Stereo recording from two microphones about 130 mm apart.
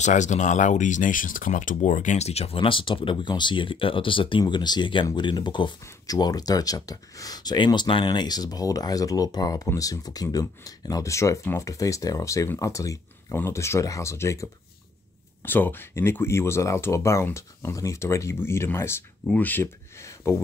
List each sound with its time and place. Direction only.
0.0 s speech: 65° left (ahead or behind); by 20.3 s 20° left (ahead or behind)